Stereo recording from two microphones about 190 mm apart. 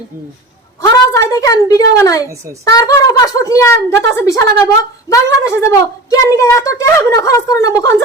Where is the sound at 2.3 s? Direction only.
15° right (ahead or behind).